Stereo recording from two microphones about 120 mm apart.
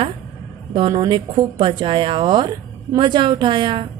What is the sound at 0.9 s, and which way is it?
A woman's voice, 35° right (ahead or behind).